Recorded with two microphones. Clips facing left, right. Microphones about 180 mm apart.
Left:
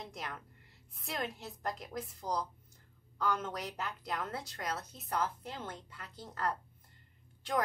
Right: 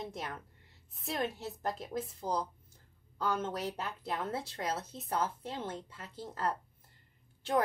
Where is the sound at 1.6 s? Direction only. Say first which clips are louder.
Right 3 dB; 30° right (ahead or behind).